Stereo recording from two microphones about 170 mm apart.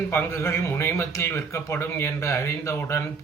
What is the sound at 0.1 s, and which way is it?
A man's voice, 15° left (ahead or behind).